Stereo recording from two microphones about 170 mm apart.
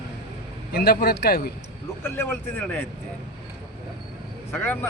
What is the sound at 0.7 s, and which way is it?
Speech, 65° left (ahead or behind).